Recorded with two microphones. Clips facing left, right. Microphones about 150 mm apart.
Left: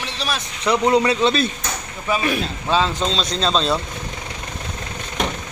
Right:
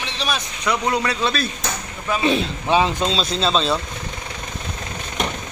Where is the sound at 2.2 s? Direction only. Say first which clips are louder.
Right 3 dB; 20° right (ahead or behind).